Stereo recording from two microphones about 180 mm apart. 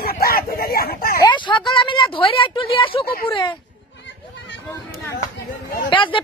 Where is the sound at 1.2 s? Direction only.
25° left (ahead or behind).